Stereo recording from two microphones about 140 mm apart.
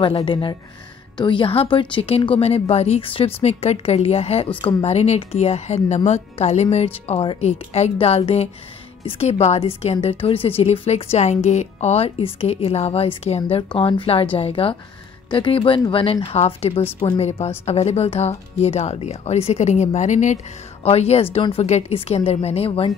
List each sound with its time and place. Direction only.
0.0 s a woman's voice: 40° left (ahead or behind); by 20.3 s 60° left (ahead or behind)
20.8 s a woman's voice: 50° left (ahead or behind)